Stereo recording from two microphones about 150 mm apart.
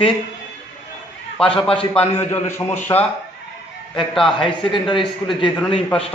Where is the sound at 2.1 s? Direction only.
15° left (ahead or behind).